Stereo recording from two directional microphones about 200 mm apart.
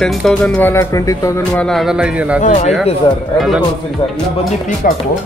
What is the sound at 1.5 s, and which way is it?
Speech, centre (ahead or behind).